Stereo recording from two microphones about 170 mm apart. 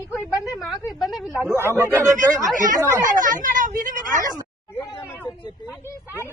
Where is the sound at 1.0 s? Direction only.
Centre (ahead or behind).